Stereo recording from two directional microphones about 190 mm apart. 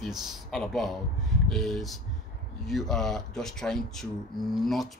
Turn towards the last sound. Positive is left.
turn(degrees=0)  # may be behind; listen again after turning